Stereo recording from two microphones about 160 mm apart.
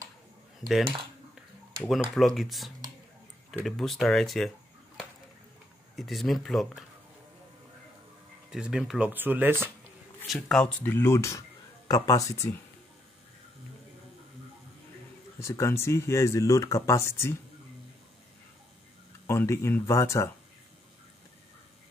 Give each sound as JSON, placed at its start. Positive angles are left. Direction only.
{"t": 1.8, "sound": "speech", "side_deg": 0}
{"t": 5.9, "sound": "speech", "side_deg": 0}
{"t": 8.5, "sound": "speech", "side_deg": -5}
{"t": 10.2, "sound": "speech", "side_deg": 0}
{"t": 15.4, "sound": "speech", "side_deg": 15}
{"t": 19.2, "sound": "speech", "side_deg": 15}